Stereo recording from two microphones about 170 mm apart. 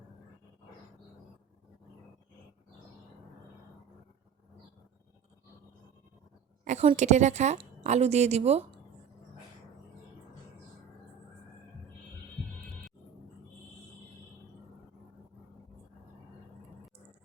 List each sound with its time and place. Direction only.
6.7 s a woman's voice: 40° right (ahead or behind)